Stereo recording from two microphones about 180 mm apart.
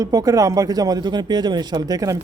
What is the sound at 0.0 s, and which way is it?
A man's voice, 20° right (ahead or behind).